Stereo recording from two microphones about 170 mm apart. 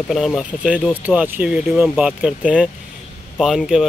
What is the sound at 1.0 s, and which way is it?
Speech, 10° right (ahead or behind).